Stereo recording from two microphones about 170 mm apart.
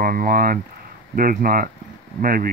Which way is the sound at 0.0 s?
55° right (ahead or behind).